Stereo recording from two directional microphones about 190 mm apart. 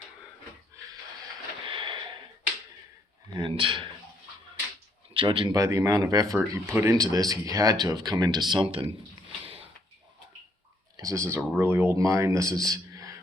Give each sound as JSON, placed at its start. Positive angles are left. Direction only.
{"t": 1.6, "sound": "a sound", "side_deg": -25}
{"t": 3.3, "sound": "speech", "side_deg": -25}
{"t": 5.1, "sound": "speech", "side_deg": -25}
{"t": 10.9, "sound": "speech", "side_deg": -15}